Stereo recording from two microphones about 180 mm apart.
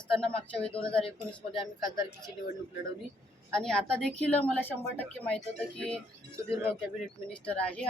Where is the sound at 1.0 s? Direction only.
30° left (ahead or behind).